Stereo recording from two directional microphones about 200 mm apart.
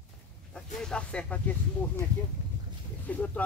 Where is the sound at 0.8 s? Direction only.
5° left (ahead or behind).